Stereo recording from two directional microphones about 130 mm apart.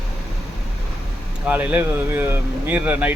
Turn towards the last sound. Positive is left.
turn(degrees=-10)  # may be behind; listen again after turning